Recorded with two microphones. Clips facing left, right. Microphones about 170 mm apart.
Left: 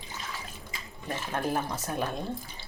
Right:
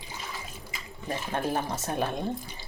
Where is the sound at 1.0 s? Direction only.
25° right (ahead or behind).